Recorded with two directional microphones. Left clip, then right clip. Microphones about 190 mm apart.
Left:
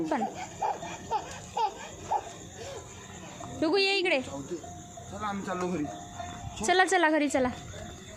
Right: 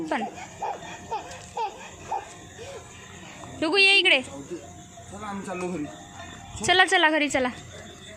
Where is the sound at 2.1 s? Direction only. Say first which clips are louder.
Left 1 dB; centre (ahead or behind).